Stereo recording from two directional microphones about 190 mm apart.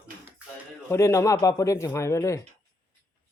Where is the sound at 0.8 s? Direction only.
15° left (ahead or behind).